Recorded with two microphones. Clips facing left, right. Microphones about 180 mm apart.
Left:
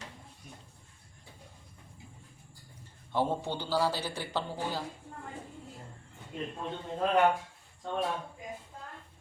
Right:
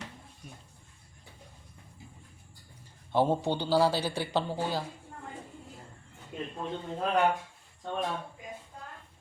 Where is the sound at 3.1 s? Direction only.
15° right (ahead or behind).